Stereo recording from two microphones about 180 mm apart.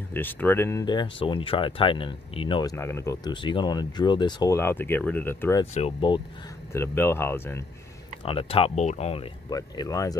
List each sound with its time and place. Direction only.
0.1 s speech: 10° left (ahead or behind)
0.8 s speech: 25° left (ahead or behind)
5.8 s speech: 30° left (ahead or behind)
6.7 s speech: 15° left (ahead or behind)
8.2 s speech: 30° left (ahead or behind)
9.5 s speech: 20° left (ahead or behind)